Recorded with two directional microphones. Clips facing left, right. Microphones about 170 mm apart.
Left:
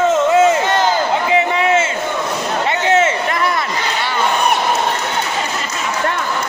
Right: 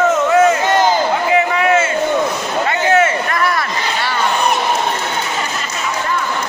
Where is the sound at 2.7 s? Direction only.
25° left (ahead or behind).